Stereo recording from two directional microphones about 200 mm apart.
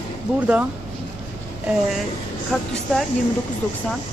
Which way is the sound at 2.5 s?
5° left (ahead or behind).